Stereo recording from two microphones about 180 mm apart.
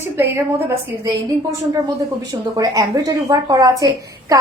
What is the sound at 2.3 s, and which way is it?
Speech, 20° right (ahead or behind).